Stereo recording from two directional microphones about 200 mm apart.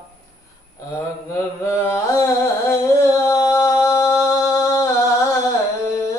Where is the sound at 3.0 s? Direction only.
15° left (ahead or behind).